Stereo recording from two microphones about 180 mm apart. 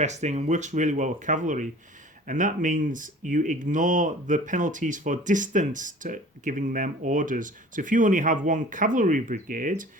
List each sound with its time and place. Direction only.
0.0 s speech: 40° right (ahead or behind)